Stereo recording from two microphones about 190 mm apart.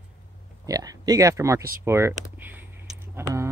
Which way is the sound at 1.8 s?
15° right (ahead or behind).